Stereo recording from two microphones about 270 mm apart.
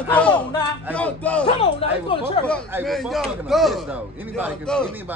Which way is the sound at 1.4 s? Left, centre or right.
Centre.